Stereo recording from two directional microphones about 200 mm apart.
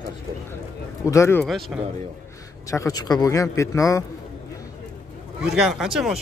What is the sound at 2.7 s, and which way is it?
A man's voice, 15° left (ahead or behind).